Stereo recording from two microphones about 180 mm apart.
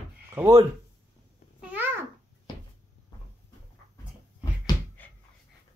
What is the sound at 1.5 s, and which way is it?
Babbling, 10° right (ahead or behind).